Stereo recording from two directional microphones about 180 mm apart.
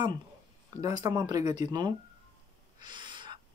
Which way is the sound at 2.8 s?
25° right (ahead or behind).